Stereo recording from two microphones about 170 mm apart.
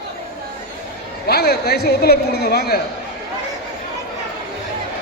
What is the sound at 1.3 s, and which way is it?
Speech, 70° left (ahead or behind).